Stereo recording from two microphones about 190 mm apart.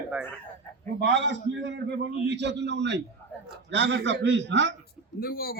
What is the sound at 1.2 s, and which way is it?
A man's voice, 70° right (ahead or behind).